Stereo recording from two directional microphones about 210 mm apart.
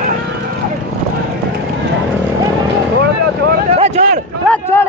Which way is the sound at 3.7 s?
30° right (ahead or behind).